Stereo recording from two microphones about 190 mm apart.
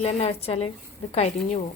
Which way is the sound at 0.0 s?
35° left (ahead or behind).